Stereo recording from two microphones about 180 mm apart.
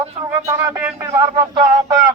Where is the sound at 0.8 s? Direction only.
10° right (ahead or behind).